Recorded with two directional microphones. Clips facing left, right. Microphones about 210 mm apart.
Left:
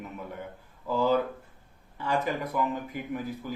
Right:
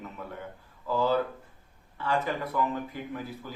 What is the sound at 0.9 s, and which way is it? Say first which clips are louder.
Speech: left 1 dB; 15° left (ahead or behind).